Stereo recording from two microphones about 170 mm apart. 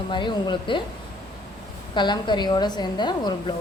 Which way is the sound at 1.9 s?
25° left (ahead or behind).